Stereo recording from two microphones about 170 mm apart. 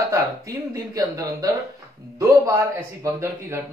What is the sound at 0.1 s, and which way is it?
A man's voice, 20° right (ahead or behind).